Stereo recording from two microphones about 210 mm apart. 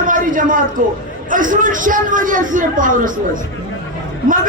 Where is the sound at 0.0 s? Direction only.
40° right (ahead or behind).